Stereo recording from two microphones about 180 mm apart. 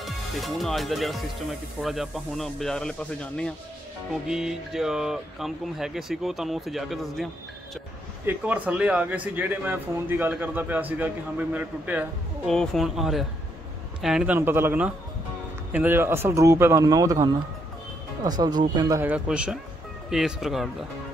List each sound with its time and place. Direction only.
0.0 s speech: centre (ahead or behind)
8.3 s a man's voice: 10° right (ahead or behind)
19.0 s a man's voice: 5° right (ahead or behind)